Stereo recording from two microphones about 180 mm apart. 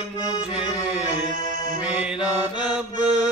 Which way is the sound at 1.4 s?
20° left (ahead or behind).